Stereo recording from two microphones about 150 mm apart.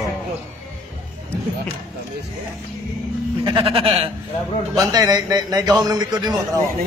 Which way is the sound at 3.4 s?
35° right (ahead or behind).